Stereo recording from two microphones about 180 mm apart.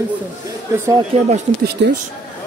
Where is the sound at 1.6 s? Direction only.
70° right (ahead or behind).